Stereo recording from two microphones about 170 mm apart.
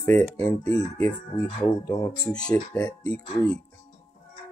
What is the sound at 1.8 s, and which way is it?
Speech, 20° left (ahead or behind).